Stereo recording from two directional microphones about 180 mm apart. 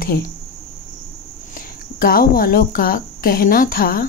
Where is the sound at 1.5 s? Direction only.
55° left (ahead or behind).